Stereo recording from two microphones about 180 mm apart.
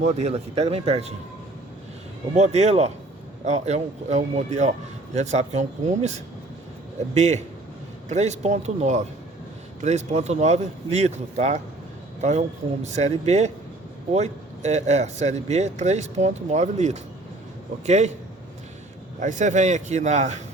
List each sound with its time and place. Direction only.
0.0 s speech: 40° right (ahead or behind)
2.3 s speech: 40° right (ahead or behind)
19.2 s speech: 45° right (ahead or behind)